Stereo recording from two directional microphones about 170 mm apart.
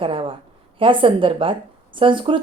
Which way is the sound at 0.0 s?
30° right (ahead or behind).